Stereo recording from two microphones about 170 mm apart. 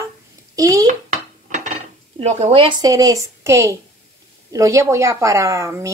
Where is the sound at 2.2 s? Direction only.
35° right (ahead or behind); by 5.9 s 15° right (ahead or behind).